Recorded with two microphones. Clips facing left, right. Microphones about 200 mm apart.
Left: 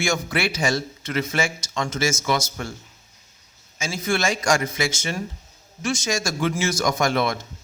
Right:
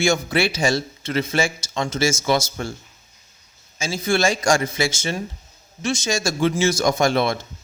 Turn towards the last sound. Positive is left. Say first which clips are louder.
# right 3 dB
turn(degrees=-30)  # may be behind; listen again after turning